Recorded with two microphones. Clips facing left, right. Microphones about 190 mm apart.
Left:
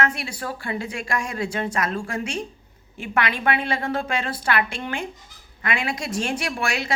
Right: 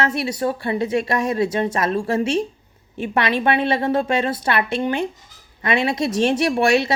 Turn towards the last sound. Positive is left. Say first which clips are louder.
# right 9 dB
turn(degrees=-25)  # may be behind; listen again after turning